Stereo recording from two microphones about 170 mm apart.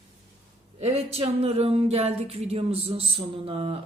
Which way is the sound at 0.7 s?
40° right (ahead or behind).